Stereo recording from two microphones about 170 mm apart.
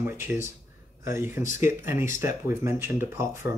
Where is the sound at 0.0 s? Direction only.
15° right (ahead or behind).